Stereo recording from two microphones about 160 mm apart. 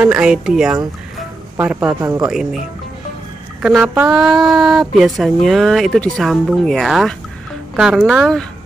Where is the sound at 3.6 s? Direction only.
5° right (ahead or behind).